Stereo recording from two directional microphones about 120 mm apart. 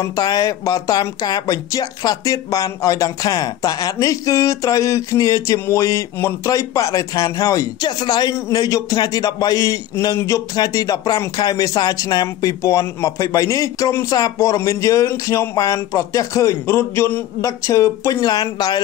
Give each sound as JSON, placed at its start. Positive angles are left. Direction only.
{"t": 0.0, "sound": "speech", "side_deg": 30}